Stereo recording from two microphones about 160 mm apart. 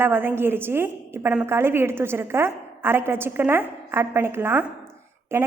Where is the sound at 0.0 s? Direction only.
10° right (ahead or behind).